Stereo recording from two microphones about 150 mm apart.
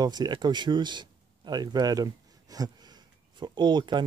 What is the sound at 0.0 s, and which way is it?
Speech, 30° right (ahead or behind).